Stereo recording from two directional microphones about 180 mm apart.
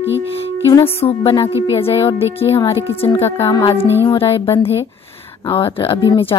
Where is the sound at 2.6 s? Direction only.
20° left (ahead or behind).